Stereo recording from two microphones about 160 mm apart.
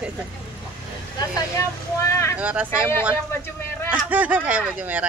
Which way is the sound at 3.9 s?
10° right (ahead or behind).